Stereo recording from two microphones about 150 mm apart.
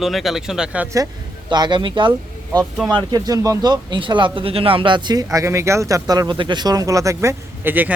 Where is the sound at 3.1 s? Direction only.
25° right (ahead or behind).